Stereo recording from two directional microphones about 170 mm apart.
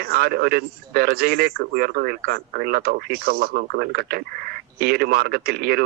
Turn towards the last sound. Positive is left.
turn(degrees=-65)  # may be behind; listen again after turning